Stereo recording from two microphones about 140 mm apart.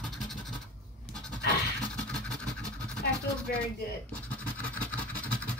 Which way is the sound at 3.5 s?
90° left.